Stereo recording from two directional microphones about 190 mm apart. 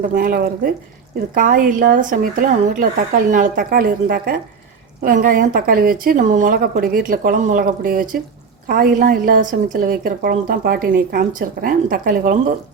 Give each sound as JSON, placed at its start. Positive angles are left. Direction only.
{"t": 0.0, "sound": "a woman's voice", "side_deg": -50}